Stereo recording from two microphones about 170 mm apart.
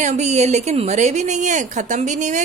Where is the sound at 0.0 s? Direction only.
40° right (ahead or behind).